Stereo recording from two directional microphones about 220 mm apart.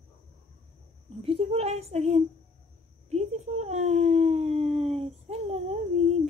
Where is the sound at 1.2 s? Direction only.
25° right (ahead or behind).